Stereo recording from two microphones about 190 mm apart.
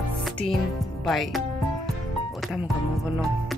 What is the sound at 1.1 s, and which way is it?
Speech, centre (ahead or behind).